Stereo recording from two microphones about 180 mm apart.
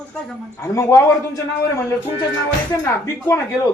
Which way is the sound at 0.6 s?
15° left (ahead or behind).